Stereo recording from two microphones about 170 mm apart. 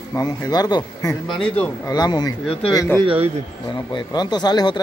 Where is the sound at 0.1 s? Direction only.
25° left (ahead or behind).